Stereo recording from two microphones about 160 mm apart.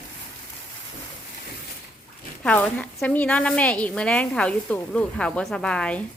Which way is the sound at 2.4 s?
10° left (ahead or behind).